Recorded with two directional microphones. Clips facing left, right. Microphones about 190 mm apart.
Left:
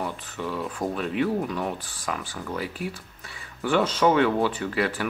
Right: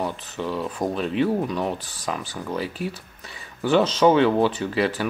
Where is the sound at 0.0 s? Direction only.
20° right (ahead or behind).